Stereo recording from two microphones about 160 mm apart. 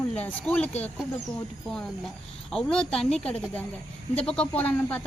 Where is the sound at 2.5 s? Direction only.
5° left (ahead or behind).